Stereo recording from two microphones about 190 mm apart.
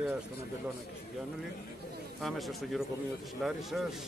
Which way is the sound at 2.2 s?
Centre (ahead or behind).